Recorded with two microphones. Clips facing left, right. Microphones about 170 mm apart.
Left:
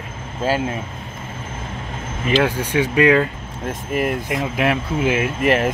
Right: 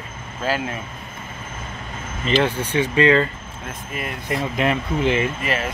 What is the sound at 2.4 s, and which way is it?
Speech, 10° left (ahead or behind).